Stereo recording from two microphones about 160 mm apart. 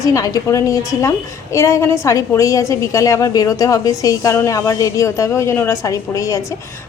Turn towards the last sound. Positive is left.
turn(degrees=20)  # may be behind; listen again after turning